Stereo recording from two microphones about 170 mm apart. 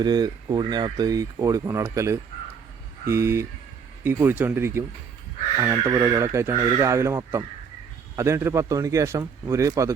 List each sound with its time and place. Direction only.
0.0 s speech: 25° right (ahead or behind)